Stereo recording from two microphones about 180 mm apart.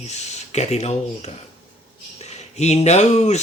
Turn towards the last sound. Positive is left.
turn(degrees=40)  # may be behind; listen again after turning